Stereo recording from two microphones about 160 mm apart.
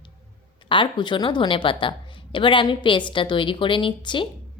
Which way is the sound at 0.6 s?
30° left (ahead or behind).